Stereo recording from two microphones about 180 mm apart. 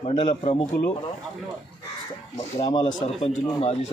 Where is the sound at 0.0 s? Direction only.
30° left (ahead or behind).